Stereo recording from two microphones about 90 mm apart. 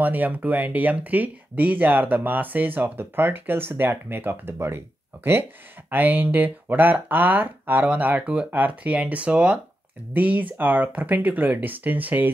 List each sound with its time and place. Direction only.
0.0 s speech: 20° right (ahead or behind)